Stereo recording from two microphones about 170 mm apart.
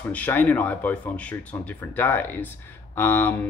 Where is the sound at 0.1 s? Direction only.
10° left (ahead or behind).